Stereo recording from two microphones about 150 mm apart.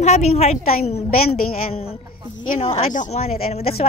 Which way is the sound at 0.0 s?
45° left (ahead or behind).